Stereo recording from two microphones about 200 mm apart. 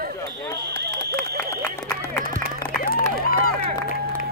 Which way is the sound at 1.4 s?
15° left (ahead or behind).